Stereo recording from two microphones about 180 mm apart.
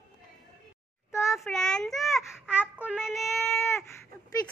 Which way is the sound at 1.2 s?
Centre (ahead or behind).